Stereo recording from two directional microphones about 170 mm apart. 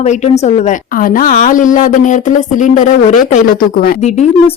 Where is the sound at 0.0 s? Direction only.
40° left (ahead or behind).